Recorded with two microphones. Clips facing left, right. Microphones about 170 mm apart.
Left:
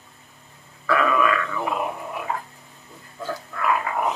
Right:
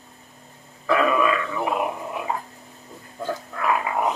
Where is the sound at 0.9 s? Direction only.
20° right (ahead or behind).